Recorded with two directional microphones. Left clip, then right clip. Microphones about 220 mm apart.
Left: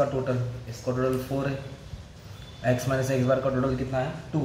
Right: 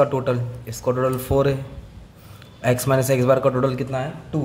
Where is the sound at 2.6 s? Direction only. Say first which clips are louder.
Right 6 dB; 50° right (ahead or behind).